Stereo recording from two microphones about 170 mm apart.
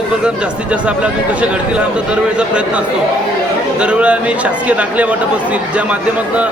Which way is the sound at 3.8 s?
5° right (ahead or behind).